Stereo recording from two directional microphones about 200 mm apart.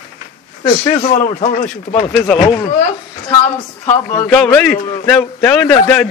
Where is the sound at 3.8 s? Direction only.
5° left (ahead or behind).